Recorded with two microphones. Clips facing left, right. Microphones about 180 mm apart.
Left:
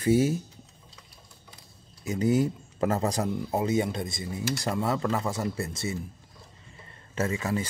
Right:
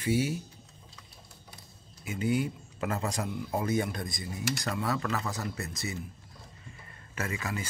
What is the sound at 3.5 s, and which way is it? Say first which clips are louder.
Speech: left 3 dB; 20° left (ahead or behind).